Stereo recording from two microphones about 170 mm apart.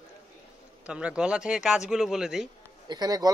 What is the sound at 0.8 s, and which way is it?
Speech, 5° right (ahead or behind).